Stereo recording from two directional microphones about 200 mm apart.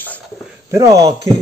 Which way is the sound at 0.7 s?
15° right (ahead or behind).